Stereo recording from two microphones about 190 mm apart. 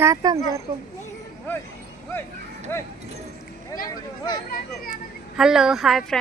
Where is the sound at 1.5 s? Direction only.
10° left (ahead or behind).